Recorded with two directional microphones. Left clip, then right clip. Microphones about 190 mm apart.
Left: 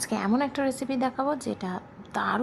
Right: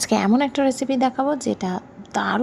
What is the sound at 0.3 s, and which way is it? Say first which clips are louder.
A woman's voice: right 7 dB; 20° right (ahead or behind).